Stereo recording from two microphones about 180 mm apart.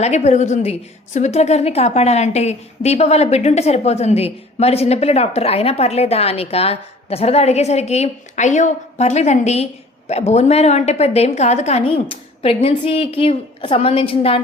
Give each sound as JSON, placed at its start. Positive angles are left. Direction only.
{"t": 0.0, "sound": "a woman's voice", "side_deg": 40}